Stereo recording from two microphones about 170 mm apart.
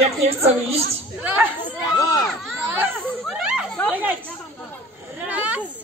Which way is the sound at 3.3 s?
5° right (ahead or behind).